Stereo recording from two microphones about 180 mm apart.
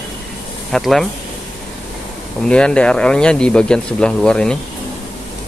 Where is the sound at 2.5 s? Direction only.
5° left (ahead or behind).